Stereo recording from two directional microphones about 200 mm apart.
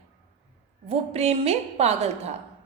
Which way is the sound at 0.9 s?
30° right (ahead or behind).